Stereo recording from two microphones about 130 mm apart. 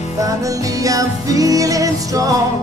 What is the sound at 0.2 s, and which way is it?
Music, 25° right (ahead or behind).